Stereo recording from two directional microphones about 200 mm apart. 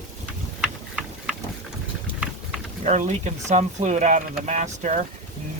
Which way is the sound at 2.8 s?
35° right (ahead or behind).